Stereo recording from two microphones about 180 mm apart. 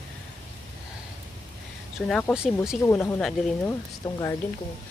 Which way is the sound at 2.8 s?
15° left (ahead or behind).